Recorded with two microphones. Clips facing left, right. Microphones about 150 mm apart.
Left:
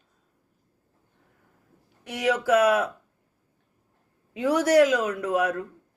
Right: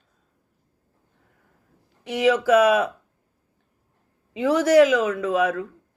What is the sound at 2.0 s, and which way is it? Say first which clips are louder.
Speech: right 5 dB; 90° right.